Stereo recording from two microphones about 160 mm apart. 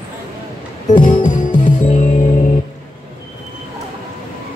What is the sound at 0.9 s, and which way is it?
Music, 50° left (ahead or behind).